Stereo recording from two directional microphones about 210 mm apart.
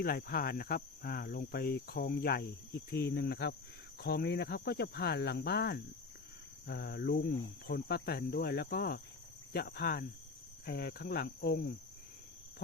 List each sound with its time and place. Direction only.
0.0 s speech: 45° left (ahead or behind)